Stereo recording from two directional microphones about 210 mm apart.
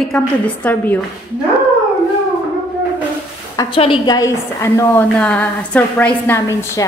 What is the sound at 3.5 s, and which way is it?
A woman's voice, 25° left (ahead or behind).